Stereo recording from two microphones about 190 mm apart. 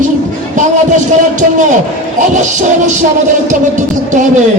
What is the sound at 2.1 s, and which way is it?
Music, 40° right (ahead or behind).